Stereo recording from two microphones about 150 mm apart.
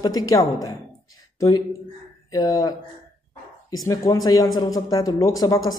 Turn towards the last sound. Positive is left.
turn(degrees=25)  # may be behind; listen again after turning